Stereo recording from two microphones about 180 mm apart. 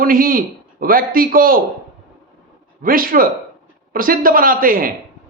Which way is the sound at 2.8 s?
50° right (ahead or behind).